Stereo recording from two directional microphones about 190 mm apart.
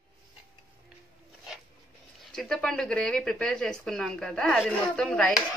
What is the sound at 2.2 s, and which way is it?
Speech, centre (ahead or behind).